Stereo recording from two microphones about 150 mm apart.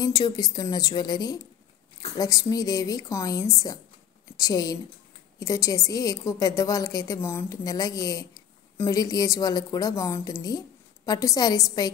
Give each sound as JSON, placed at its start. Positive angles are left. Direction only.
{"t": 0.0, "sound": "a woman's voice", "side_deg": 25}